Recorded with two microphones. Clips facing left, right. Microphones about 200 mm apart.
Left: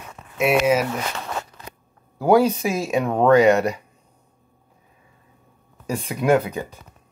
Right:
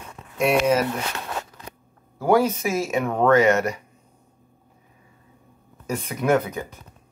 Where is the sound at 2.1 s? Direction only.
15° left (ahead or behind).